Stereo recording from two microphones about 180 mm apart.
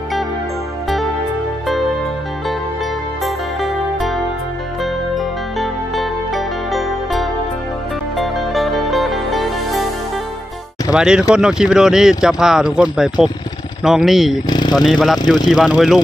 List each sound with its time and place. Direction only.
3.3 s music: centre (ahead or behind)
10.9 s speech: 5° right (ahead or behind)
14.5 s a sound: 25° left (ahead or behind)
14.8 s speech: centre (ahead or behind)